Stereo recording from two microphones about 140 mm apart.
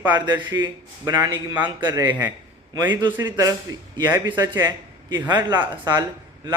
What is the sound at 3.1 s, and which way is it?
Speech, 20° right (ahead or behind).